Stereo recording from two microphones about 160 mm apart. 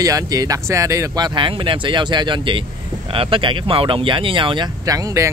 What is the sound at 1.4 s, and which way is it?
Speech, 30° right (ahead or behind).